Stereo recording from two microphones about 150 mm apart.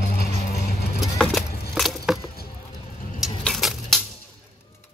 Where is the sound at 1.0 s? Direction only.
Centre (ahead or behind).